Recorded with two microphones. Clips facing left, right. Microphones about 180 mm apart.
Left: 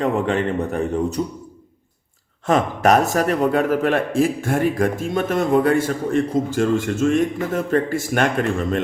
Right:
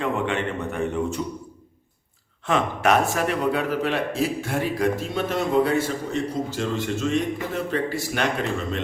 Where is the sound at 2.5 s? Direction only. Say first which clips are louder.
Left 4 dB; 40° left (ahead or behind).